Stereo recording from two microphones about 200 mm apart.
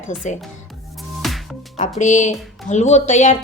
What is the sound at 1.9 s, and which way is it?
A woman's voice, 40° left (ahead or behind).